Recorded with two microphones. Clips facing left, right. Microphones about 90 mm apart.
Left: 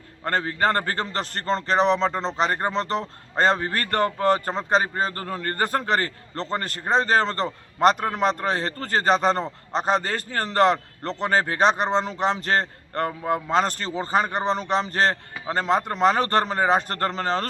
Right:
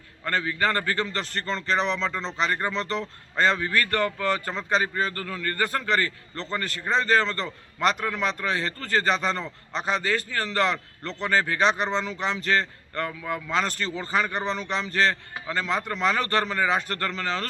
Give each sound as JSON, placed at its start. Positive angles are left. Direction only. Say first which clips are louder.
{"t": 0.3, "sound": "a man's voice", "louder": "left 3 dB", "side_deg": 40}